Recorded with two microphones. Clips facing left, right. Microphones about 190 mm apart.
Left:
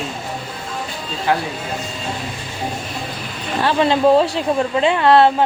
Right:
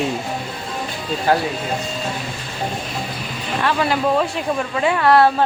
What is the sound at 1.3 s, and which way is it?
Speech, 40° right (ahead or behind).